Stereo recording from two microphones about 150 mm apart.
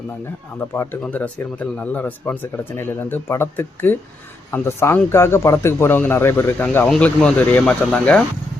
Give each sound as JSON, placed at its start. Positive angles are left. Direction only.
{"t": 0.7, "sound": "speech", "side_deg": 15}